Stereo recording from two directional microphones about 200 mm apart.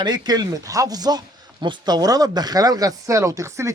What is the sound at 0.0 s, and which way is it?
Speech, 20° right (ahead or behind).